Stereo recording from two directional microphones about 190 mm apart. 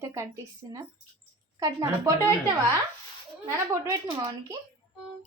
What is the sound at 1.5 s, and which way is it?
Speech, 15° right (ahead or behind).